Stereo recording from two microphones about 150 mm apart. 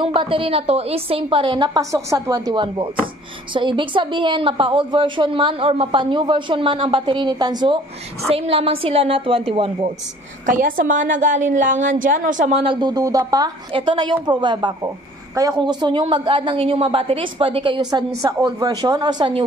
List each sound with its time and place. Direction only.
0.0 s a woman's voice: 35° right (ahead or behind)
10.4 s a woman's voice: 65° right (ahead or behind); by 12.7 s 45° right (ahead or behind)
12.8 s a woman's voice: 25° right (ahead or behind)